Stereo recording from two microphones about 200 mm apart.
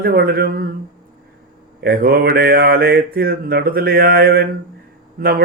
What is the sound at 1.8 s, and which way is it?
Mantra, 50° right (ahead or behind).